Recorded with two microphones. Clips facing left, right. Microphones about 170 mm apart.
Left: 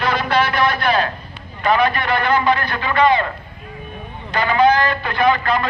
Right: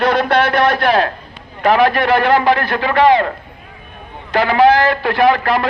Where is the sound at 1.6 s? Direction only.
90° right.